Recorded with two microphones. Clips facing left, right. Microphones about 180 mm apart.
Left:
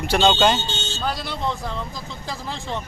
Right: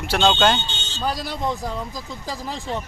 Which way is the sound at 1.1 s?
40° right (ahead or behind).